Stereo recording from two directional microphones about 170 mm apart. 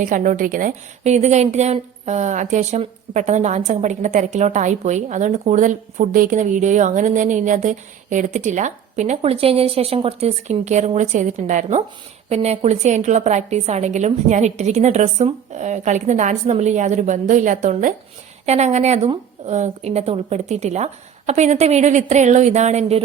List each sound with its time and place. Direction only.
0.0 s a woman's voice: 50° right (ahead or behind)